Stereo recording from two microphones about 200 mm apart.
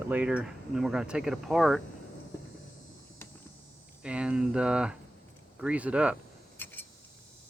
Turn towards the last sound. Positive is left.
turn(degrees=10)  # may be behind; listen again after turning